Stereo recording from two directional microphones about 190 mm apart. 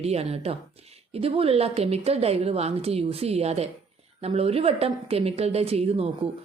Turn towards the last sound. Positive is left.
turn(degrees=-30)  # may be behind; listen again after turning